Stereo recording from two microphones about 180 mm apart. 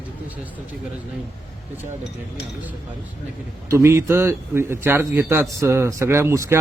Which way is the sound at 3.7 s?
15° right (ahead or behind).